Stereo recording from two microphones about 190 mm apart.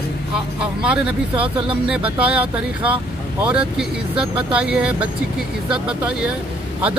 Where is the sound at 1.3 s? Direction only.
30° right (ahead or behind).